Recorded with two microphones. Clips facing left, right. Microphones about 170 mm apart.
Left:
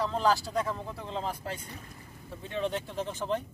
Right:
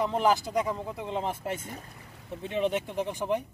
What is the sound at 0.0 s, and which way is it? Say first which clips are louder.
Speech: right 2 dB; 20° right (ahead or behind).